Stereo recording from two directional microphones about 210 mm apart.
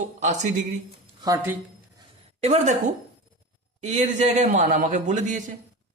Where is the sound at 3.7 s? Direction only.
35° right (ahead or behind).